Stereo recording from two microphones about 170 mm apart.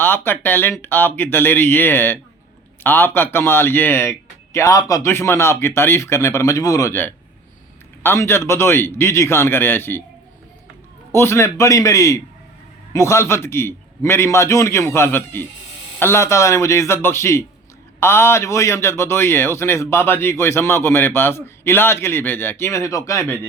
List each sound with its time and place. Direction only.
0.0 s a man's voice: 10° left (ahead or behind)
11.1 s a man's voice: 15° left (ahead or behind)